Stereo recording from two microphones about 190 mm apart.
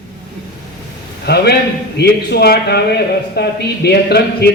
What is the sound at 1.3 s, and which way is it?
A man's voice, 55° left (ahead or behind).